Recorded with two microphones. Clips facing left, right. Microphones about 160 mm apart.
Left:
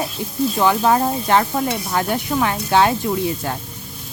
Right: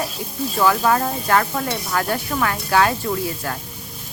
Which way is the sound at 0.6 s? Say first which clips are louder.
Left 1 dB; 20° left (ahead or behind).